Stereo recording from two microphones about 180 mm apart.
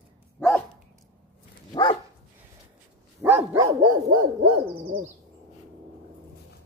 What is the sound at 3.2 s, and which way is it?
Dog, 10° right (ahead or behind).